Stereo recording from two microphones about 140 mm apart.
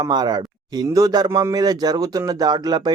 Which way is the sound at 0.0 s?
30° right (ahead or behind).